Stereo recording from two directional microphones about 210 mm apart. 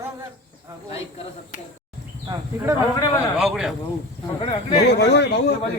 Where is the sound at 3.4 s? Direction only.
Centre (ahead or behind).